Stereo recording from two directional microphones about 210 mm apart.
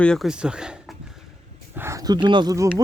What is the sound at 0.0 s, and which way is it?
Speech, centre (ahead or behind).